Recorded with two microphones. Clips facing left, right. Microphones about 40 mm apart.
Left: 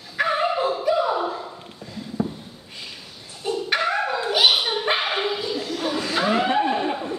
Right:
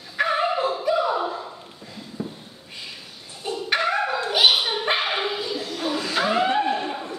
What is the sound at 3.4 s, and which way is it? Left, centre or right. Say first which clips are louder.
Dog: left 1 dB; centre.